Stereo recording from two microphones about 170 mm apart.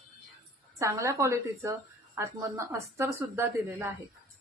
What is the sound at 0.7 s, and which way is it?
Speech, 20° right (ahead or behind).